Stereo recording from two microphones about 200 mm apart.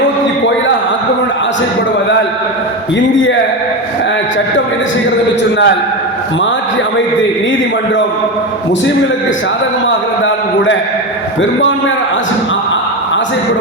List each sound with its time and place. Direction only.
5.4 s a man's voice: 60° left (ahead or behind)
9.8 s a man's voice: 70° left (ahead or behind)